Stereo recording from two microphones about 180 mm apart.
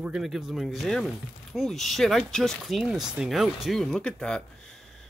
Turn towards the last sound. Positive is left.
turn(degrees=5)  # may be behind; listen again after turning